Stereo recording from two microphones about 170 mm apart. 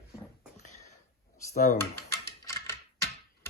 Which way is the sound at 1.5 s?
50° left (ahead or behind).